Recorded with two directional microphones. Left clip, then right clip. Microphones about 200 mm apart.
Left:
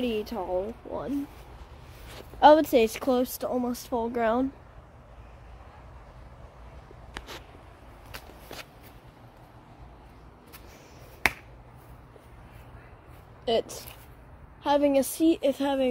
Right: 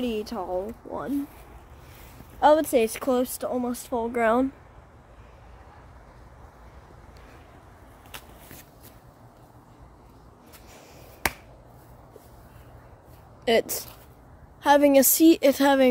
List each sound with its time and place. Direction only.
0.0 s a woman's voice: centre (ahead or behind)
2.4 s a woman's voice: 10° left (ahead or behind); by 4.5 s 10° right (ahead or behind)
11.2 s finger snapping: 35° right (ahead or behind)
13.5 s a woman's voice: 35° right (ahead or behind)